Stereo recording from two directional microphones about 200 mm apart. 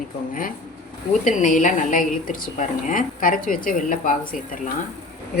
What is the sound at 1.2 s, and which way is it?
A woman's voice, 40° left (ahead or behind).